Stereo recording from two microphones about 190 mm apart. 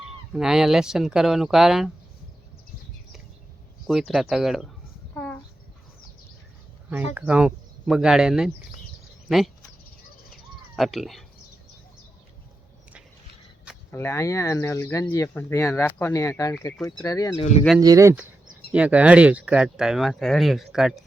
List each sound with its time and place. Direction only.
0.3 s speech: 5° right (ahead or behind)
3.8 s speech: centre (ahead or behind)
5.1 s a sound: 10° left (ahead or behind)
7.1 s speech: 10° right (ahead or behind)
10.8 s speech: centre (ahead or behind)
13.9 s speech: 15° left (ahead or behind)
17.7 s speech: 20° right (ahead or behind)
18.7 s speech: 5° right (ahead or behind)